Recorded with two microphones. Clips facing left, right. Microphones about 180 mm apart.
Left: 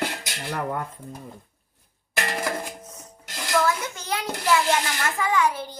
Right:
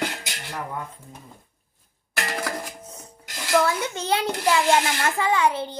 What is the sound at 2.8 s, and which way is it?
Rub, 30° right (ahead or behind).